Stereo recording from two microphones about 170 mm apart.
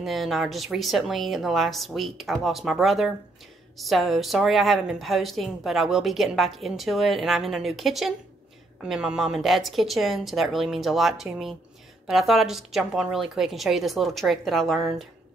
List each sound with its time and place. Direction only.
0.0 s a woman's voice: centre (ahead or behind)